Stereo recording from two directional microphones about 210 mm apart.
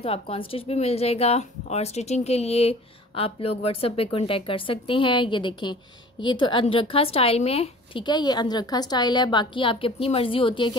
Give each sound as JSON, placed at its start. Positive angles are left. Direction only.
{"t": 0.0, "sound": "speech", "side_deg": 25}